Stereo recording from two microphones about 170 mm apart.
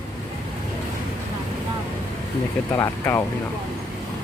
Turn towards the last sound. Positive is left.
turn(degrees=15)  # may be behind; listen again after turning